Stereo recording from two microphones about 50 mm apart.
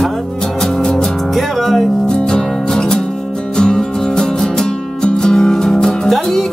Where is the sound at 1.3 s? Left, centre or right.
Centre.